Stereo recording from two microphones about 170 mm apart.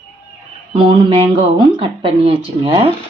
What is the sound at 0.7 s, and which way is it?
Speech, 30° right (ahead or behind).